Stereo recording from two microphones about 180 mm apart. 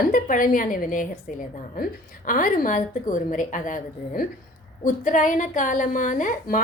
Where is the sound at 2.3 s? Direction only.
50° left (ahead or behind).